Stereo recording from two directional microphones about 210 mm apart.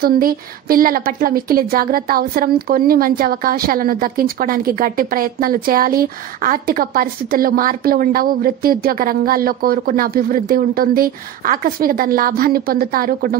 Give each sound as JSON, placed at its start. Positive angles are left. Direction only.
{"t": 0.0, "sound": "a woman's voice", "side_deg": -45}